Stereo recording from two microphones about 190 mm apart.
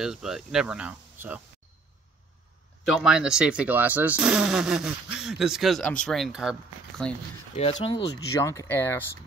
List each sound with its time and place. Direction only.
0.0 s speech: 5° right (ahead or behind)
2.8 s speech: 5° right (ahead or behind)
7.8 s speech: 20° left (ahead or behind)